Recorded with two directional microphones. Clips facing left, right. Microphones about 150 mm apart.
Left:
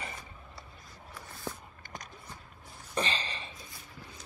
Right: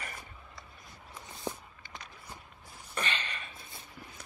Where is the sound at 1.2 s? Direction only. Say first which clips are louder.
Right 2 dB; 20° right (ahead or behind).